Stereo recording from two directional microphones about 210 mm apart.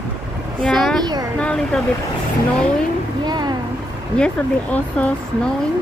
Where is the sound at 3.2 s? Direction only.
20° right (ahead or behind).